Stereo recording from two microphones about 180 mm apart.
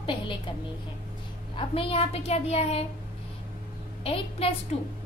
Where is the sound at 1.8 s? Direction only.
30° left (ahead or behind).